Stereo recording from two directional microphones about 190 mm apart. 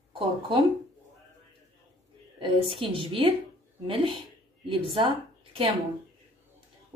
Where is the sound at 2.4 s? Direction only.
25° right (ahead or behind).